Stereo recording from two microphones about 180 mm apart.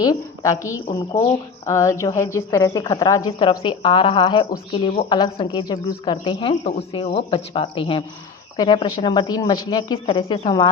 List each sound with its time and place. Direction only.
0.0 s a woman's voice: 20° left (ahead or behind)